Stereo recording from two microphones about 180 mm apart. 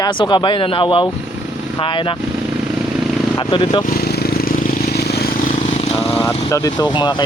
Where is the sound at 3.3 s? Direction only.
25° left (ahead or behind).